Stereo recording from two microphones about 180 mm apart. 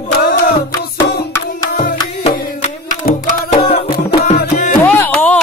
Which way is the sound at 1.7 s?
65° left (ahead or behind).